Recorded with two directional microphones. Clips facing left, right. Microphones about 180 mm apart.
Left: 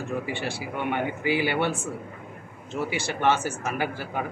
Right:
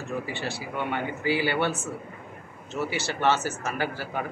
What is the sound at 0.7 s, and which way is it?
Speech, 20° left (ahead or behind).